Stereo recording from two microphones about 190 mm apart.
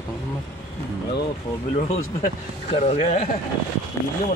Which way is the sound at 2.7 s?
35° left (ahead or behind).